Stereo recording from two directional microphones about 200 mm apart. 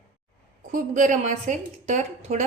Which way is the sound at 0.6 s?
40° right (ahead or behind).